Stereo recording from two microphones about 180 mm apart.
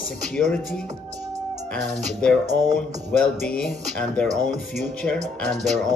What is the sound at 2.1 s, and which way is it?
Music, 5° left (ahead or behind).